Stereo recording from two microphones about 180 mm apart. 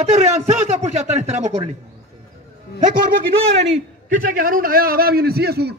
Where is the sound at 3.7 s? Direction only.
50° right (ahead or behind).